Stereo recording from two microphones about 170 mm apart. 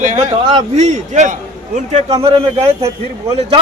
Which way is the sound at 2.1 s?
30° right (ahead or behind).